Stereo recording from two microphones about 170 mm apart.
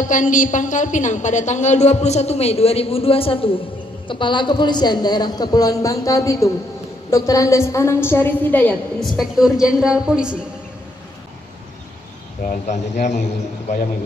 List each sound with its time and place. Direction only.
0.1 s a woman's voice: 50° left (ahead or behind); by 9.1 s 10° left (ahead or behind)
9.1 s a woman's voice: centre (ahead or behind)
12.4 s speech: 45° left (ahead or behind)